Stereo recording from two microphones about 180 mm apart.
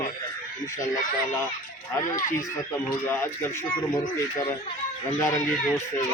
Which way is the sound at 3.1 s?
10° left (ahead or behind).